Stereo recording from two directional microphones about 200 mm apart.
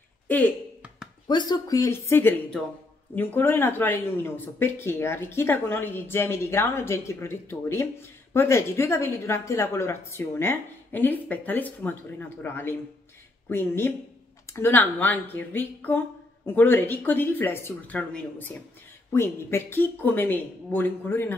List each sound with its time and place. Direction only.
1.2 s speech: 20° left (ahead or behind)